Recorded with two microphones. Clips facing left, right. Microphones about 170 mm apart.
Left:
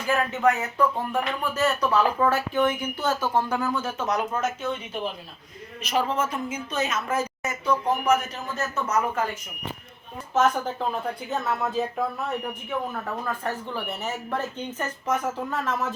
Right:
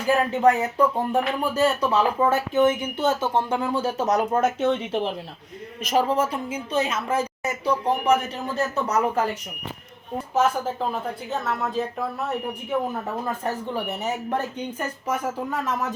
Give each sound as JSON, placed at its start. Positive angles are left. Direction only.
{"t": 0.3, "sound": "a woman's voice", "side_deg": -35}
{"t": 4.4, "sound": "speech", "side_deg": -65}
{"t": 5.8, "sound": "a woman's voice", "side_deg": -40}
{"t": 10.3, "sound": "a woman's voice", "side_deg": -5}
{"t": 12.9, "sound": "speech", "side_deg": -20}